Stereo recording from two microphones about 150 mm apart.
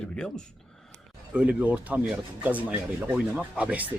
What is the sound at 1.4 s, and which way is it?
Speech, 10° right (ahead or behind).